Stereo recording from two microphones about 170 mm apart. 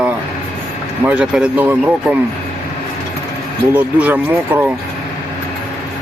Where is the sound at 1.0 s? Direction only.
10° right (ahead or behind).